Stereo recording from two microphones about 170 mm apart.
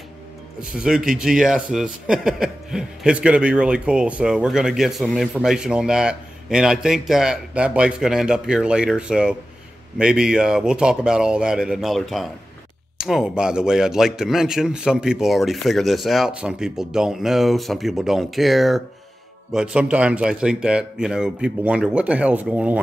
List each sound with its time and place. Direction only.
0.7 s a man's voice: 5° right (ahead or behind)